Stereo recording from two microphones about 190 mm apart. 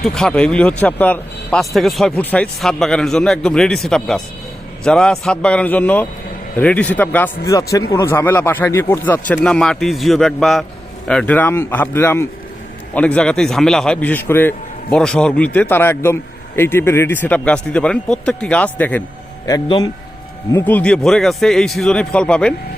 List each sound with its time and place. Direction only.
0.0 s speech: 5° left (ahead or behind)
19.5 s a man's voice: 20° left (ahead or behind)
20.5 s speech: 10° left (ahead or behind)